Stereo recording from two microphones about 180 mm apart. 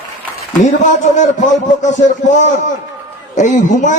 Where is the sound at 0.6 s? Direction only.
40° left (ahead or behind).